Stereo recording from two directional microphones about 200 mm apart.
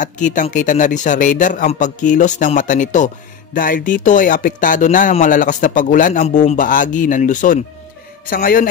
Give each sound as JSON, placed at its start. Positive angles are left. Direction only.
{"t": 0.0, "sound": "a man's voice", "side_deg": 40}